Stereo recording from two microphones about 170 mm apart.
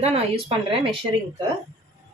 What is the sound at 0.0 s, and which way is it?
Speech, 35° right (ahead or behind).